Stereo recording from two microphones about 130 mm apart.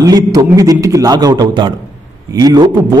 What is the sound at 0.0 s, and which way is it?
A man's voice, 30° right (ahead or behind).